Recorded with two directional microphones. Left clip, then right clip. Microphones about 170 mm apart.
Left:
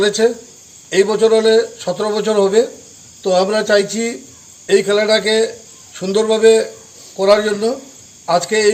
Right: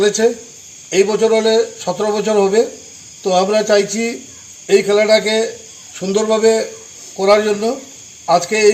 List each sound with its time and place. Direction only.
0.0 s speech: 10° left (ahead or behind)